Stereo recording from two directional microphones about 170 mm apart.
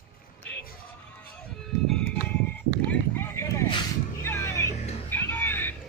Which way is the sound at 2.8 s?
15° left (ahead or behind).